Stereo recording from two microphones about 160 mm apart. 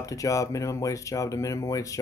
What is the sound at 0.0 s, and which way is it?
Speech, 20° left (ahead or behind).